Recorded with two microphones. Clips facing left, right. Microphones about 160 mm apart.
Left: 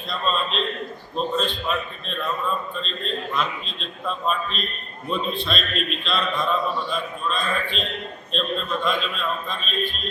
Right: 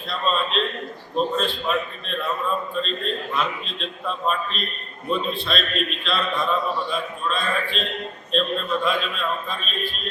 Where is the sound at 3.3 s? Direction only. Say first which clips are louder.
Right 1 dB; centre (ahead or behind).